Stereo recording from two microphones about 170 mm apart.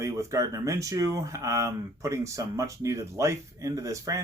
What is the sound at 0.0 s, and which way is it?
Speech, 20° right (ahead or behind).